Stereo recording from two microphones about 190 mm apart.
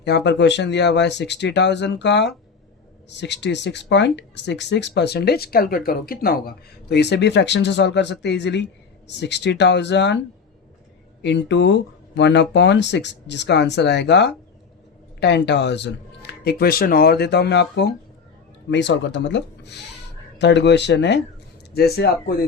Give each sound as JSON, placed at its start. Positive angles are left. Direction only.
{"t": 0.0, "sound": "speech", "side_deg": 60}
{"t": 11.2, "sound": "speech", "side_deg": 65}